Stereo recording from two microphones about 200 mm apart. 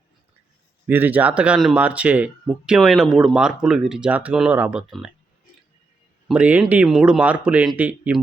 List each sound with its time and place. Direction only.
0.9 s speech: 10° right (ahead or behind)
6.2 s speech: 5° right (ahead or behind)